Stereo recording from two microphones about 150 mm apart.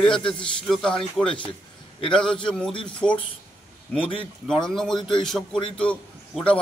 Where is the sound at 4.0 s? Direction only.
40° left (ahead or behind).